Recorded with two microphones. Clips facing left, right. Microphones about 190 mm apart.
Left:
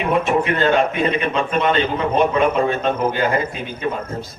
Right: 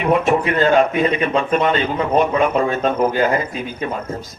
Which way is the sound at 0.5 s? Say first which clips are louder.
Right 4 dB; 40° right (ahead or behind).